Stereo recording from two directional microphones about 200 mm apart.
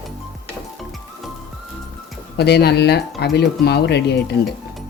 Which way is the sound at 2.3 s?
55° left (ahead or behind).